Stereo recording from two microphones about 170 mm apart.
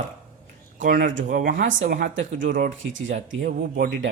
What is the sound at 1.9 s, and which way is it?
Speech, 75° right (ahead or behind).